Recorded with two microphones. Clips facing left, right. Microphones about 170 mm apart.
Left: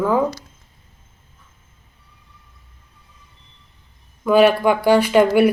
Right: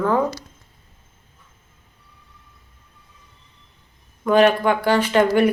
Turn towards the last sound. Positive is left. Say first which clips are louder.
# left 3 dB
turn(degrees=10)  # may be behind; listen again after turning